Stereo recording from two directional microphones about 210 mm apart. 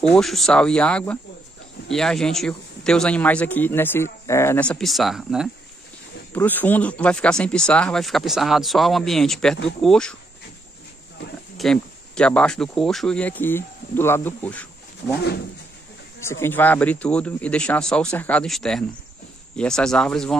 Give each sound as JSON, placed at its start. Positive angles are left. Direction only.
{"t": 0.1, "sound": "a man's voice", "side_deg": 0}
{"t": 6.3, "sound": "a man's voice", "side_deg": 10}
{"t": 11.5, "sound": "a man's voice", "side_deg": 0}
{"t": 15.0, "sound": "speech", "side_deg": 55}
{"t": 16.3, "sound": "a man's voice", "side_deg": 10}